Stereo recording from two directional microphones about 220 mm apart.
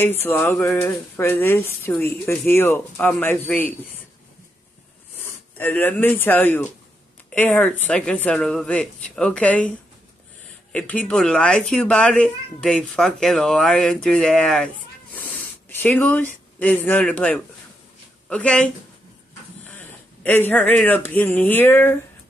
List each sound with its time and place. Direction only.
0.0 s speech: 10° left (ahead or behind)
5.6 s speech: 10° left (ahead or behind)